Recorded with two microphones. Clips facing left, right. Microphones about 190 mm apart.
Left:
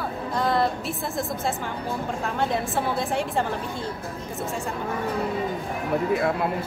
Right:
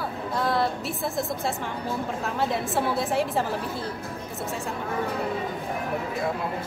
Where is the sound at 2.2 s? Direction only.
Centre (ahead or behind).